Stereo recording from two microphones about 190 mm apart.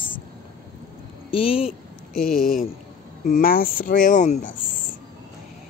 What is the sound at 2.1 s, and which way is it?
Speech, centre (ahead or behind).